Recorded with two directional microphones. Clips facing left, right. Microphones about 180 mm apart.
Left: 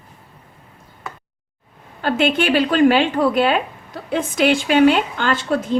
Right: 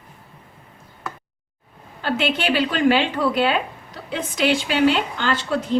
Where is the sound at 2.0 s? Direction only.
50° left (ahead or behind).